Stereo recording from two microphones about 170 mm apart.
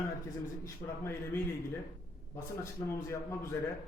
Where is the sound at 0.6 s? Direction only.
15° left (ahead or behind).